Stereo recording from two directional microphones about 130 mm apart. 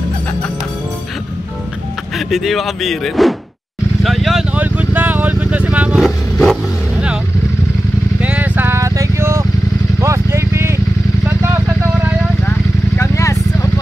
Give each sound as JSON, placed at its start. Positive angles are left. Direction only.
{"t": 2.1, "sound": "speech", "side_deg": 0}
{"t": 4.0, "sound": "vehicle", "side_deg": 0}
{"t": 4.6, "sound": "vehicle", "side_deg": -15}
{"t": 8.2, "sound": "vehicle", "side_deg": -10}
{"t": 12.4, "sound": "vehicle", "side_deg": 20}